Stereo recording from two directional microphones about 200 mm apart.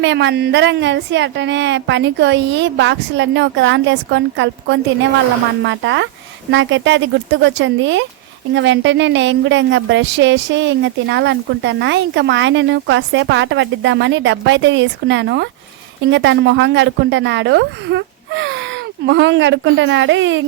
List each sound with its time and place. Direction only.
0.0 s speech: 60° right (ahead or behind)